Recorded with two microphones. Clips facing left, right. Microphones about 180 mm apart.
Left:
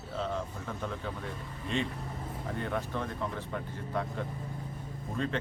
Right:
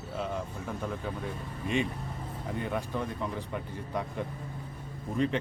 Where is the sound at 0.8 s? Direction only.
10° right (ahead or behind).